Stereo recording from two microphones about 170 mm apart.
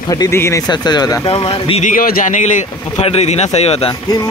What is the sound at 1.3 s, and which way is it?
Speech, 35° left (ahead or behind).